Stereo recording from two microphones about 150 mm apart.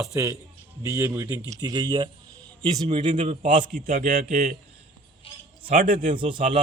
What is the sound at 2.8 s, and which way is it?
Speech, 45° right (ahead or behind).